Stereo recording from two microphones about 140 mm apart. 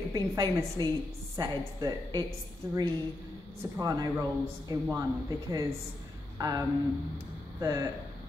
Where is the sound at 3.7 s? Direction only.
25° right (ahead or behind).